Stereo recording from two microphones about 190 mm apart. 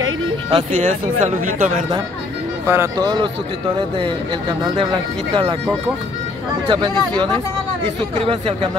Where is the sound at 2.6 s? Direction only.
15° right (ahead or behind).